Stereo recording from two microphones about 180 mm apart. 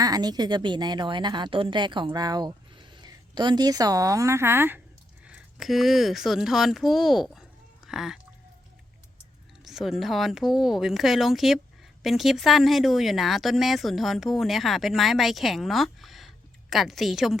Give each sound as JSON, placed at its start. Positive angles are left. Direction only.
{"t": 0.0, "sound": "a woman's voice", "side_deg": -20}
{"t": 9.6, "sound": "speech", "side_deg": 0}